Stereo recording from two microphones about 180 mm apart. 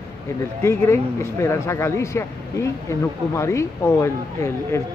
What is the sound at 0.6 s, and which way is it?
Speech, 15° left (ahead or behind).